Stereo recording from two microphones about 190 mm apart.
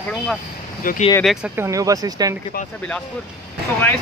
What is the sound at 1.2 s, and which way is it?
Speech, 10° right (ahead or behind).